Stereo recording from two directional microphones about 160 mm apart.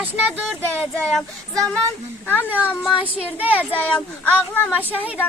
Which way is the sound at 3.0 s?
10° left (ahead or behind).